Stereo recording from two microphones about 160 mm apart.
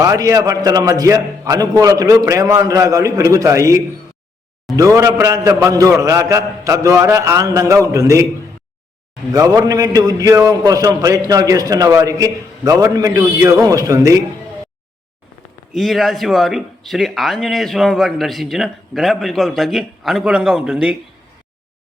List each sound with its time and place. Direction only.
0.0 s a man's voice: 20° right (ahead or behind)
9.3 s a man's voice: 20° right (ahead or behind)
15.7 s speech: centre (ahead or behind)